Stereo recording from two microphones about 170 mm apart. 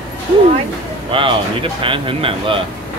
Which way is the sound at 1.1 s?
30° right (ahead or behind).